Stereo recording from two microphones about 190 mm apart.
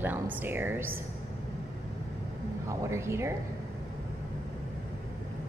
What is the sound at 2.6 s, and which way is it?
Speech, 15° right (ahead or behind).